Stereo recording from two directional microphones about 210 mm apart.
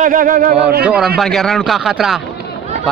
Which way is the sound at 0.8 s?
5° right (ahead or behind).